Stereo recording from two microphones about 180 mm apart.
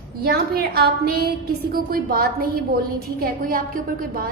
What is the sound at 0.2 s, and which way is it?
A woman's voice, 60° right (ahead or behind).